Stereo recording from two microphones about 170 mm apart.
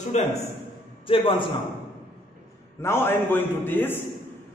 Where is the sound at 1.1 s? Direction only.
30° left (ahead or behind).